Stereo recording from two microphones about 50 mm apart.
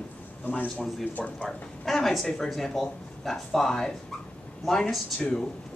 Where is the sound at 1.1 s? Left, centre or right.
Left.